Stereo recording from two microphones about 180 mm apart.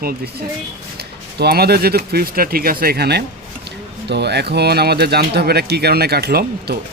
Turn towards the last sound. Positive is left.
turn(degrees=-60)  # may be behind; listen again after turning